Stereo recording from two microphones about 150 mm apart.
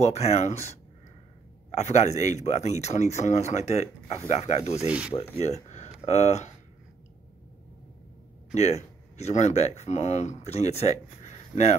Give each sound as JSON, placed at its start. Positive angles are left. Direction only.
{"t": 0.0, "sound": "speech", "side_deg": 45}
{"t": 4.7, "sound": "speech", "side_deg": -10}
{"t": 5.4, "sound": "speech", "side_deg": 45}
{"t": 8.5, "sound": "speech", "side_deg": 45}